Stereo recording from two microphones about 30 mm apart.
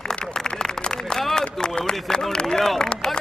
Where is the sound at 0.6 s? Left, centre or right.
Left.